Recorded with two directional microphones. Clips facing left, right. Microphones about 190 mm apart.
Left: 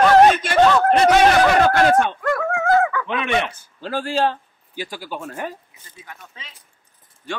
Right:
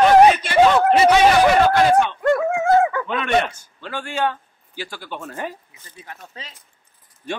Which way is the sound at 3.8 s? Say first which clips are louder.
Left 3 dB; 35° left (ahead or behind).